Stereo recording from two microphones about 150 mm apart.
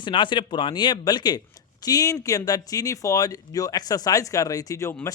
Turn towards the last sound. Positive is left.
turn(degrees=20)  # may be behind; listen again after turning